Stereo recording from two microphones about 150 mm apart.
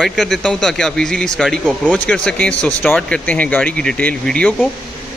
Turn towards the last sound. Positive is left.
turn(degrees=5)  # may be behind; listen again after turning